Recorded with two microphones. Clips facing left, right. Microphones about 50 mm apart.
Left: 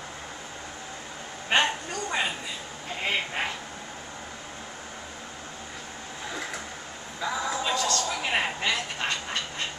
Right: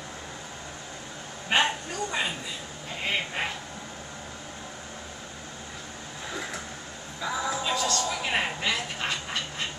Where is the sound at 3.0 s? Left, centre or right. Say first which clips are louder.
Left 1 dB; centre.